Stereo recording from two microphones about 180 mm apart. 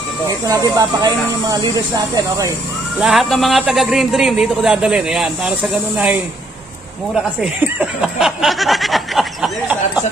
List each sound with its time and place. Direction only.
0.5 s speech: 20° right (ahead or behind)
3.0 s a man's voice: centre (ahead or behind)
7.6 s a sound: 5° right (ahead or behind)